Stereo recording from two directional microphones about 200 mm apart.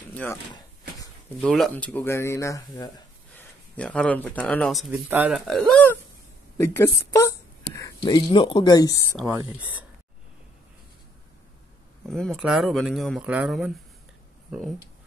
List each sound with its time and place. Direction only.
0.1 s a sound: 10° left (ahead or behind)
1.4 s speech: 5° left (ahead or behind)
9.2 s speech: 15° right (ahead or behind)
12.1 s speech: centre (ahead or behind)